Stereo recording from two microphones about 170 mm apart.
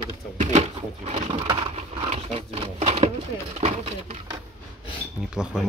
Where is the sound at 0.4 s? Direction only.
40° right (ahead or behind).